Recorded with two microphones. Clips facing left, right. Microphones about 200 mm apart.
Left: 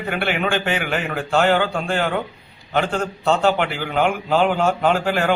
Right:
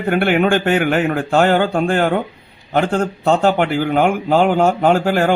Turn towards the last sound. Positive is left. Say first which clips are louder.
# right 5 dB
turn(degrees=-45)  # may be behind; listen again after turning